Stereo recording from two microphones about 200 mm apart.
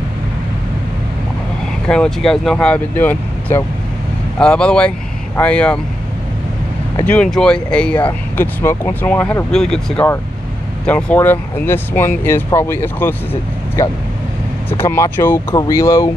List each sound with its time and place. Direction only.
1.9 s speech: 5° left (ahead or behind)
7.0 s speech: 5° left (ahead or behind)